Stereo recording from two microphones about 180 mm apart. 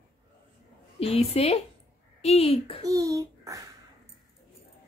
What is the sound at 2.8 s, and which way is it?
Speech, 20° right (ahead or behind).